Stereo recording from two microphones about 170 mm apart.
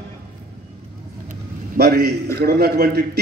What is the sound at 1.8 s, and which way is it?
A man's voice, 70° right (ahead or behind).